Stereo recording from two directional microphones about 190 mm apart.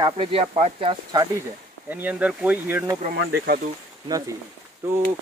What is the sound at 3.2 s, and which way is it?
Speech, 55° right (ahead or behind).